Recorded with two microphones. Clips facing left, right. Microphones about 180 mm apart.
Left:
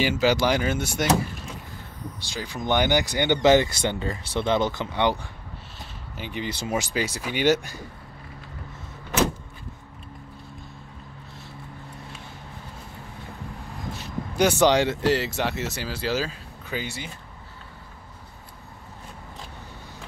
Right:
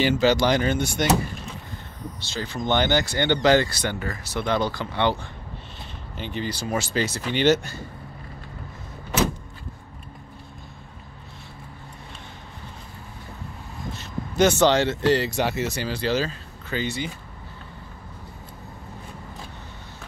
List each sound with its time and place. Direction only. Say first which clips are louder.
0.0 s speech: right 2 dB; 5° left (ahead or behind)
2.1 s speech: right 3 dB; 15° left (ahead or behind)
13.9 s speech: right 2 dB; 10° left (ahead or behind)